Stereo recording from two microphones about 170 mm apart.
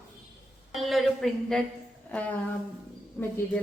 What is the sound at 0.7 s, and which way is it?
Speech, centre (ahead or behind).